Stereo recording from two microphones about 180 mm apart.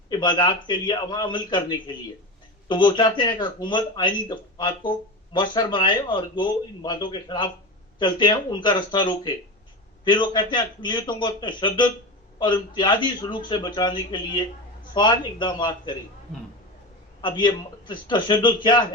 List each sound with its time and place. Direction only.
0.1 s speech: 25° left (ahead or behind)
17.2 s speech: 25° left (ahead or behind)